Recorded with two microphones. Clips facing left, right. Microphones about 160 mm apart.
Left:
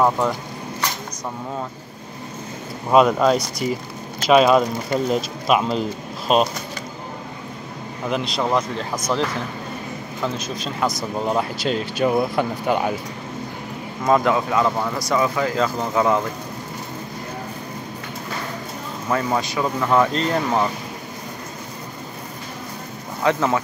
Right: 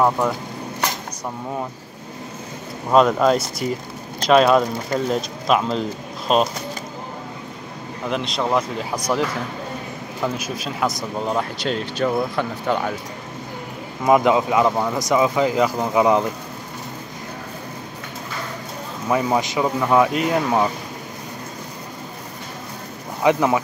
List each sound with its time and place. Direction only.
2.9 s speech: 5° left (ahead or behind)
8.1 s speech: centre (ahead or behind)
14.0 s speech: 15° right (ahead or behind)
19.0 s speech: 15° right (ahead or behind)
23.2 s speech: 15° right (ahead or behind)